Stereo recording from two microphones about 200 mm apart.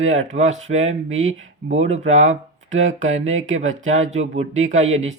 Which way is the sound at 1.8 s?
35° right (ahead or behind).